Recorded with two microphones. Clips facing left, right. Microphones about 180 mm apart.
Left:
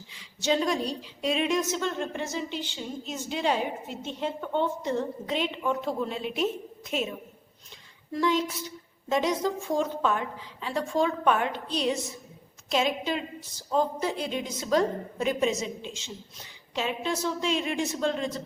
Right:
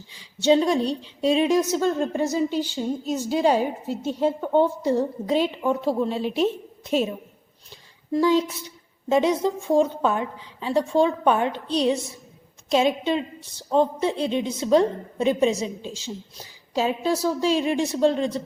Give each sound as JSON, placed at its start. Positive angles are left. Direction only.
{"t": 0.1, "sound": "a woman's voice", "side_deg": -30}
{"t": 8.1, "sound": "a woman's voice", "side_deg": -30}